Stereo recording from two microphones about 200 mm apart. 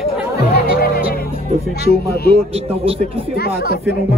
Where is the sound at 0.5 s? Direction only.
55° left (ahead or behind).